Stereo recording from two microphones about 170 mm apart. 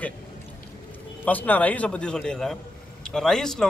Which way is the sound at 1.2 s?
10° left (ahead or behind).